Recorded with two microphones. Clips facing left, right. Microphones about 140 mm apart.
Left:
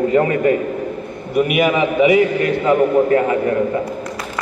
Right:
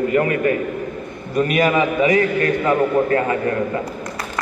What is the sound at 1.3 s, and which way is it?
A man's voice, 10° left (ahead or behind).